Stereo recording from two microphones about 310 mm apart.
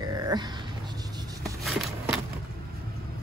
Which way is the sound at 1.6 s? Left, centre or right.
Centre.